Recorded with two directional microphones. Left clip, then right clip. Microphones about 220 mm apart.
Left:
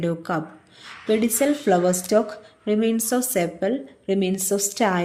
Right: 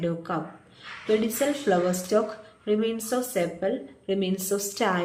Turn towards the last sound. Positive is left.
turn(degrees=30)  # may be behind; listen again after turning